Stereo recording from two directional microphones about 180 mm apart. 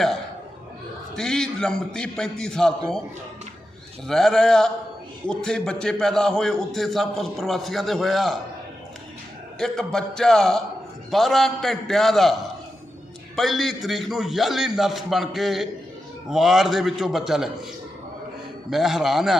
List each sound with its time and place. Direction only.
1.1 s a man's voice: 5° left (ahead or behind)
4.0 s a man's voice: centre (ahead or behind)
9.6 s a man's voice: 5° left (ahead or behind)
18.7 s a man's voice: centre (ahead or behind)